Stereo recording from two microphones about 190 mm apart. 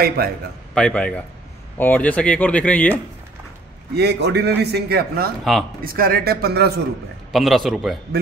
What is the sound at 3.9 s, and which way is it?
A man's voice, 60° right (ahead or behind).